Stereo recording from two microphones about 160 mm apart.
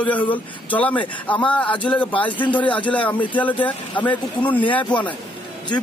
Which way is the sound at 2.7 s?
10° left (ahead or behind).